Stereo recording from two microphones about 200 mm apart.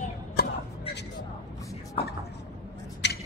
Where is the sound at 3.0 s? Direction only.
60° left (ahead or behind).